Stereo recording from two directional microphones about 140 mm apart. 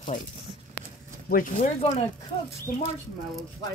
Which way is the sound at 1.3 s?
75° left (ahead or behind).